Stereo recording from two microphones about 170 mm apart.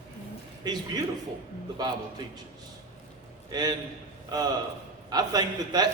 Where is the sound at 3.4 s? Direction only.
25° right (ahead or behind).